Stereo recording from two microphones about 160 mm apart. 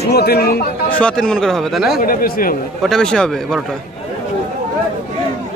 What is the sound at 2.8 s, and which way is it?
Speech, 5° left (ahead or behind).